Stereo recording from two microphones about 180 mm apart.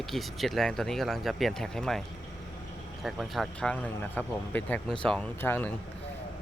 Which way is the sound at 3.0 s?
Centre (ahead or behind).